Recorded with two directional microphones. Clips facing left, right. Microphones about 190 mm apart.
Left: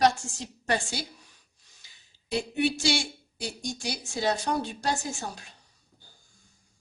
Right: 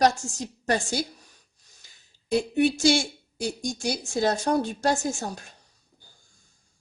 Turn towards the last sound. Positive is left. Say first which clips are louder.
# right 6 dB
turn(degrees=-45)  # may be behind; listen again after turning